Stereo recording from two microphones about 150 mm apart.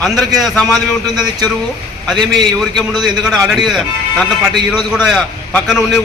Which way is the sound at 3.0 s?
Centre (ahead or behind).